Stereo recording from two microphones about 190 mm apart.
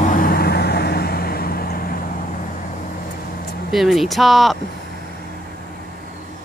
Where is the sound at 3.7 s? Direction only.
Centre (ahead or behind).